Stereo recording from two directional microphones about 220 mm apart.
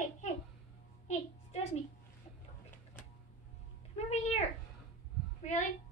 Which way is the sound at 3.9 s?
30° left (ahead or behind).